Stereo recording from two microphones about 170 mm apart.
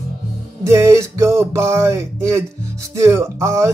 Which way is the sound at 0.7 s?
15° right (ahead or behind).